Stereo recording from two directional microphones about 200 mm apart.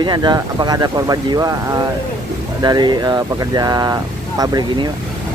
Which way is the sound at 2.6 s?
20° right (ahead or behind).